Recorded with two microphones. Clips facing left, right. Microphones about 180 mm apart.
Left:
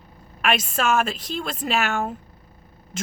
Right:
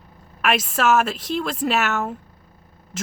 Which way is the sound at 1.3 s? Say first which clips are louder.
Right 5 dB; 75° right (ahead or behind).